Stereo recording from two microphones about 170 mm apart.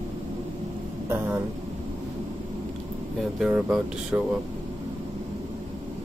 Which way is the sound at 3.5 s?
10° right (ahead or behind).